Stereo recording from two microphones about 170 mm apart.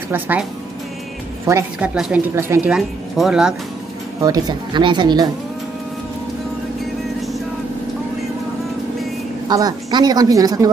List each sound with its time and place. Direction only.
0.1 s a woman's voice: 10° right (ahead or behind)
1.5 s a woman's voice: 5° right (ahead or behind)
2.7 s speech: 5° right (ahead or behind)
4.2 s a woman's voice: 20° right (ahead or behind)
9.5 s a woman's voice: 20° right (ahead or behind)